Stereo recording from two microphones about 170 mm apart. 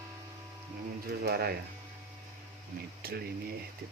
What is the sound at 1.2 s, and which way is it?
Speech, 65° right (ahead or behind).